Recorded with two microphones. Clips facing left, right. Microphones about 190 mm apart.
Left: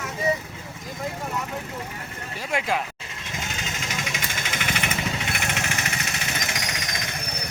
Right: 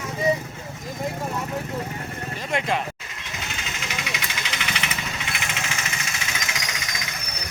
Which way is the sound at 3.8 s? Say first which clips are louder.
Right 2 dB; 45° left (ahead or behind).